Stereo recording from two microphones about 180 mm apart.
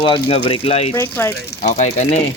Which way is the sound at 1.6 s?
40° left (ahead or behind).